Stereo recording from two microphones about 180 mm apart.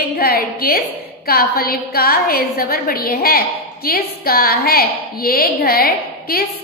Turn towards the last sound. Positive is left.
turn(degrees=55)  # may be behind; listen again after turning